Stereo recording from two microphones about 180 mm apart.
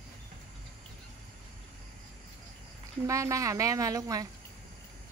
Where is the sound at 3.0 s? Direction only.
15° right (ahead or behind).